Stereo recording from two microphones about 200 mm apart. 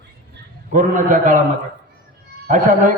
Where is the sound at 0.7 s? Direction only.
40° right (ahead or behind).